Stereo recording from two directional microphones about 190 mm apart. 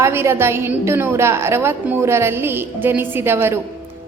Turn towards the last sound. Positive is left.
turn(degrees=-10)  # may be behind; listen again after turning